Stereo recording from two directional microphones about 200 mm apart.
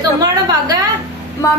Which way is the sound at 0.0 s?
20° right (ahead or behind).